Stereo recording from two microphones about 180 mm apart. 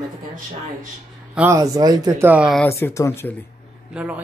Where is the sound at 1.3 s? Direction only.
15° right (ahead or behind).